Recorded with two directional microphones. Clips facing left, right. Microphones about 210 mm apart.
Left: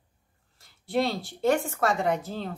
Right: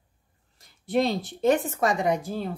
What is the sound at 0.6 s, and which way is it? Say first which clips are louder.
A woman's voice: right 2 dB; 20° right (ahead or behind).